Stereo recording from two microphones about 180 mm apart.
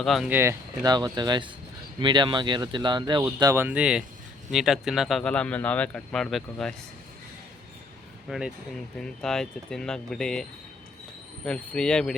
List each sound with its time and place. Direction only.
0.0 s speech: centre (ahead or behind)
0.3 s speech: 15° right (ahead or behind); by 6.7 s 5° left (ahead or behind)
8.3 s speech: 5° right (ahead or behind)
11.4 s speech: 5° left (ahead or behind)